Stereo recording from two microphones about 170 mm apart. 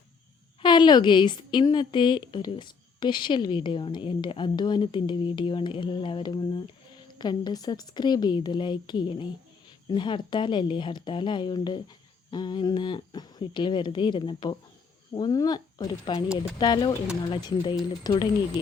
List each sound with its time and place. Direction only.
0.6 s a woman's voice: 25° left (ahead or behind)